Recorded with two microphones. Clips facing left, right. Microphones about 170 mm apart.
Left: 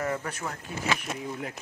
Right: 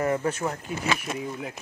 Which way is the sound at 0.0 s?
25° right (ahead or behind).